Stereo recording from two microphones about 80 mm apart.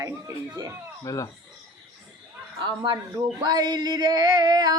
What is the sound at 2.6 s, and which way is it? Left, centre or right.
Speech, right.